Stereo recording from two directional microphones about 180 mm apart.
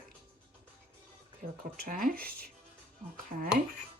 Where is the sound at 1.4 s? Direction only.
50° right (ahead or behind).